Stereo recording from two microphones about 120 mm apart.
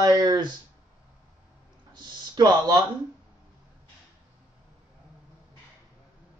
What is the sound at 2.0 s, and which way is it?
Speech, 40° right (ahead or behind).